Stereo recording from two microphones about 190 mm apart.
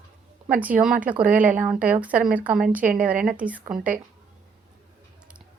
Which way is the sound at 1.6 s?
10° right (ahead or behind).